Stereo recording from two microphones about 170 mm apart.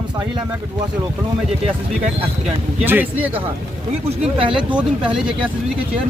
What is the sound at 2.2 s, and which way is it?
Speech, 40° right (ahead or behind).